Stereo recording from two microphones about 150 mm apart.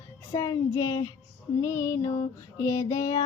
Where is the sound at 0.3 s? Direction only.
20° left (ahead or behind).